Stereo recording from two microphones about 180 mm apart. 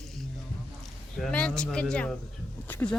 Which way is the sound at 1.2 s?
5° left (ahead or behind).